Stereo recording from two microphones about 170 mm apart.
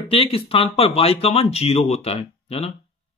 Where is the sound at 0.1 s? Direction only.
35° left (ahead or behind).